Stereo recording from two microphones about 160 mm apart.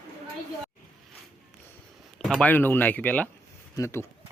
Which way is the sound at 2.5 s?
10° left (ahead or behind).